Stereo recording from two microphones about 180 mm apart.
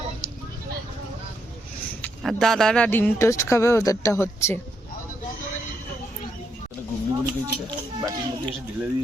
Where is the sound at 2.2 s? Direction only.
Centre (ahead or behind).